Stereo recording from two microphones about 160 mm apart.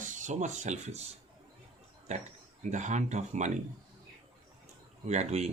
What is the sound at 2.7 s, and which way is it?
Speech, 50° right (ahead or behind).